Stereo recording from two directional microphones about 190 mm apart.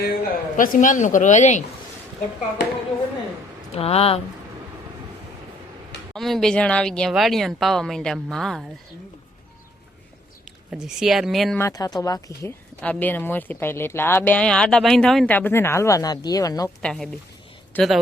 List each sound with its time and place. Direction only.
0.0 s speech: 50° left (ahead or behind)
3.7 s speech: 30° left (ahead or behind)
6.1 s speech: centre (ahead or behind)
10.7 s speech: centre (ahead or behind)
11.5 s speech: 15° left (ahead or behind)
16.8 s speech: 5° left (ahead or behind)